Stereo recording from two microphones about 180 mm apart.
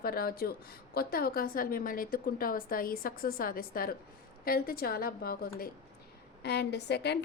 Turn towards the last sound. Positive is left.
turn(degrees=70)  # may be behind; listen again after turning